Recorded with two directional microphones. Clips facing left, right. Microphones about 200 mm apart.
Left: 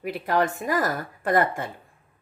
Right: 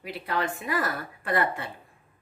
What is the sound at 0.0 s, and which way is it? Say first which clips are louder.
A woman's voice: left 6 dB; 45° left (ahead or behind).